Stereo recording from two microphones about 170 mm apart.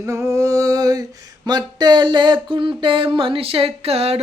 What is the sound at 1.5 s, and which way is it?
Mantra, 25° right (ahead or behind).